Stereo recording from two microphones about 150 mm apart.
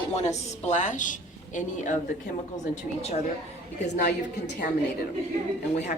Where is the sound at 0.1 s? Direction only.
50° left (ahead or behind).